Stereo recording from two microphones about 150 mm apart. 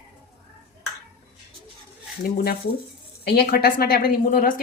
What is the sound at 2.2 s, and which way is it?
A woman's voice, 90° left.